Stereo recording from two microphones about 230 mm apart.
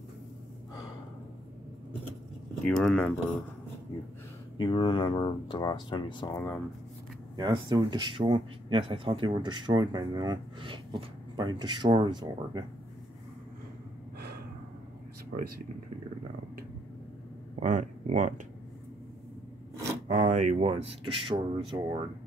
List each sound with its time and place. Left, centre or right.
2.6 s speech: centre
4.6 s speech: centre
7.3 s speech: centre
17.6 s speech: right
20.1 s speech: right